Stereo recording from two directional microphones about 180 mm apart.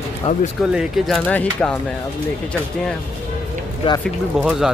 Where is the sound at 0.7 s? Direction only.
Centre (ahead or behind).